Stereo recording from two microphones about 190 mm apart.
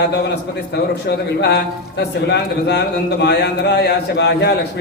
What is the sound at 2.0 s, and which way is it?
A man's voice, 60° left (ahead or behind).